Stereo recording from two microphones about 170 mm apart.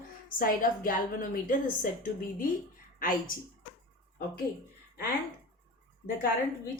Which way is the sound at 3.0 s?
55° left (ahead or behind).